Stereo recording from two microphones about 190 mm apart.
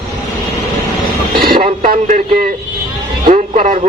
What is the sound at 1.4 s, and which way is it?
Vehicle, 50° right (ahead or behind).